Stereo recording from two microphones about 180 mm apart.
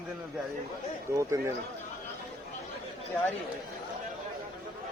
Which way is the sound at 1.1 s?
15° right (ahead or behind).